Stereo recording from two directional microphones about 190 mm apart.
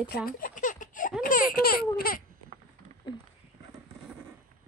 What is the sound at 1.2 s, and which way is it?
Speech, 45° left (ahead or behind).